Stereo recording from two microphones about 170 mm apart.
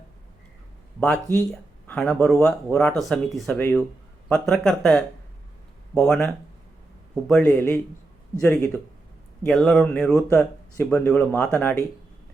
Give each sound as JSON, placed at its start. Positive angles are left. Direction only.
{"t": 0.9, "sound": "speech", "side_deg": 10}
{"t": 7.3, "sound": "speech", "side_deg": 10}
{"t": 10.2, "sound": "speech", "side_deg": 15}